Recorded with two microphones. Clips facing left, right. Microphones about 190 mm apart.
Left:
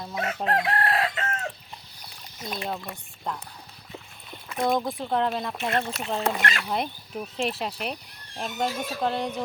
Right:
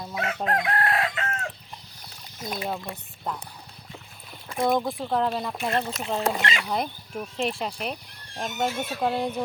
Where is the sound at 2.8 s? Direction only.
10° right (ahead or behind).